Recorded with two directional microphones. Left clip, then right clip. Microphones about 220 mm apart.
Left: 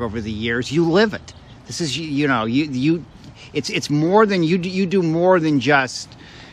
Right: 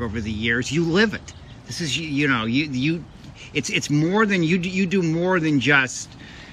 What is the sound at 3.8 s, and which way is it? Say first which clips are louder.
Speech: left 2 dB; 50° left (ahead or behind).